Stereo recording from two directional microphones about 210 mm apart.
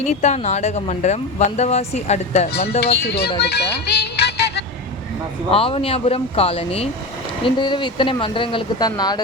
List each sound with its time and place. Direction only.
0.0 s speech: 35° left (ahead or behind)
2.8 s speech: 50° left (ahead or behind)
5.5 s speech: 25° left (ahead or behind)